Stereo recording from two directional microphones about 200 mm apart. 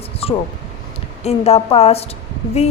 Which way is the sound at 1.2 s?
30° left (ahead or behind).